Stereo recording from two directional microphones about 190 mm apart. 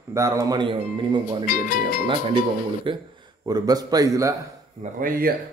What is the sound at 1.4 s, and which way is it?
Speech, 50° left (ahead or behind).